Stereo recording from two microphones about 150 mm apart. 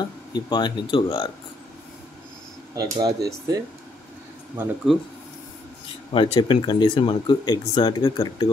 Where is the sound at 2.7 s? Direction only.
25° right (ahead or behind).